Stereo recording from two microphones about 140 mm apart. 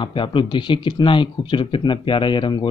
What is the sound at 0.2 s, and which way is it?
Speech, 35° left (ahead or behind).